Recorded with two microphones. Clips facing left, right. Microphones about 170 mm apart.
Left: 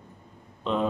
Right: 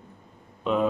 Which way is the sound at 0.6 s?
5° right (ahead or behind).